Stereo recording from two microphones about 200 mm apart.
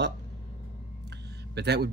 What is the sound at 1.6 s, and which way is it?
Speech, 55° right (ahead or behind).